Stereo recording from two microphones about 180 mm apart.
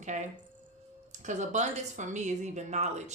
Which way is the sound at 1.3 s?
40° right (ahead or behind).